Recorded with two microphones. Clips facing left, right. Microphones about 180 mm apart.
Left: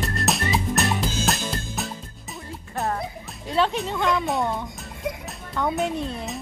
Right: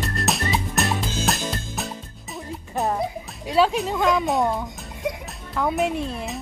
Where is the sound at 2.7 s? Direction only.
15° right (ahead or behind).